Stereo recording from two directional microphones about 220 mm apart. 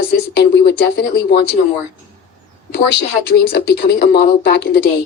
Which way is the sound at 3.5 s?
50° left (ahead or behind).